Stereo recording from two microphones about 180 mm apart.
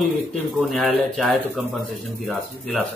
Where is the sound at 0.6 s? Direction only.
Centre (ahead or behind).